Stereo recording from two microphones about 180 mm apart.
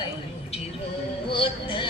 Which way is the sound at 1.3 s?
30° left (ahead or behind).